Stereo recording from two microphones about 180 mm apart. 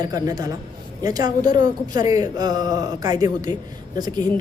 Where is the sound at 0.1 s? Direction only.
20° right (ahead or behind).